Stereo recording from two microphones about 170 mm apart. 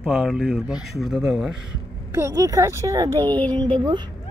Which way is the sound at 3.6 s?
25° right (ahead or behind).